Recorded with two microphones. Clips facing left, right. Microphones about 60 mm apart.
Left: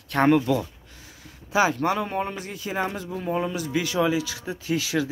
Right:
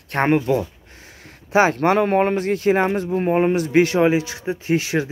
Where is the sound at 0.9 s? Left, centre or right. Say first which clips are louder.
Right 4 dB; right.